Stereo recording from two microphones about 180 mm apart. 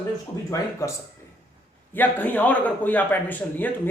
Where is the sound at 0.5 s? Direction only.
15° left (ahead or behind).